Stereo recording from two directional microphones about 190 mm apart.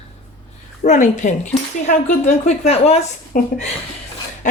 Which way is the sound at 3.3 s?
45° left (ahead or behind).